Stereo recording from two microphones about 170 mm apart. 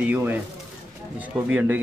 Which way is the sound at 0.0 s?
10° right (ahead or behind).